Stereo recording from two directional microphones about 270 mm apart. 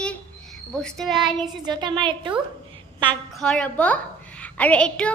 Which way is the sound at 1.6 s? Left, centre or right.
Centre.